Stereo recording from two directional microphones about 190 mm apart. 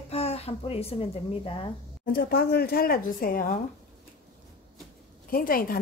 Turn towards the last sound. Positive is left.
turn(degrees=50)  # may be behind; listen again after turning